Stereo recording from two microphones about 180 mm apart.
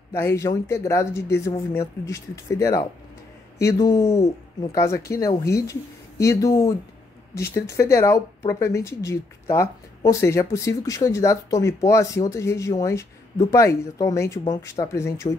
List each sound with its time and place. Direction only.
0.1 s speech: 15° left (ahead or behind)